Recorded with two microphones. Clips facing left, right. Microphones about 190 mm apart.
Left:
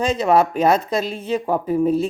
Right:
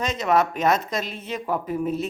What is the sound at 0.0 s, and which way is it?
Speech, 30° left (ahead or behind).